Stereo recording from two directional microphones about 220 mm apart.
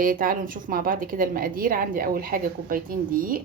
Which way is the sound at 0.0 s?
40° right (ahead or behind).